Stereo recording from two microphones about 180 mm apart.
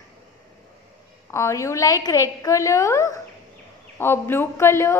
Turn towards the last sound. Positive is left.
turn(degrees=15)  # may be behind; listen again after turning